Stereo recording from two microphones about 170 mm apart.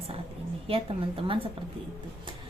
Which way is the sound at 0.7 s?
30° right (ahead or behind).